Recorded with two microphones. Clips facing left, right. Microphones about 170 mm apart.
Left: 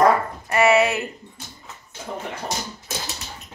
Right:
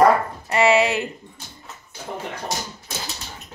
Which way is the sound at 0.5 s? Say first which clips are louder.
Even; 20° right (ahead or behind).